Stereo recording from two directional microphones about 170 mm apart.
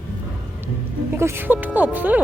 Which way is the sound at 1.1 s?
15° right (ahead or behind).